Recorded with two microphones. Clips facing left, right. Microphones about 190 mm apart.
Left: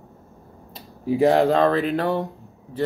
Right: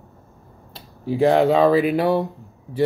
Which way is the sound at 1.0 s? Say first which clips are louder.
Right 1 dB; centre (ahead or behind).